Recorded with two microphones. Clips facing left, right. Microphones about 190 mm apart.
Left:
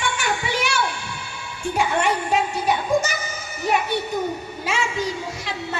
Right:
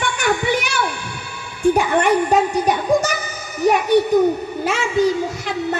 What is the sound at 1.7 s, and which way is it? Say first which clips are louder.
A woman's voice: right 5 dB; 55° right (ahead or behind).